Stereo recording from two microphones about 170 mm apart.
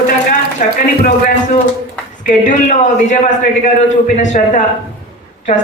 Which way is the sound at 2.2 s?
45° left (ahead or behind).